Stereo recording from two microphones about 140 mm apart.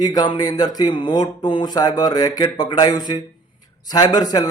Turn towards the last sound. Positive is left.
turn(degrees=30)  # may be behind; listen again after turning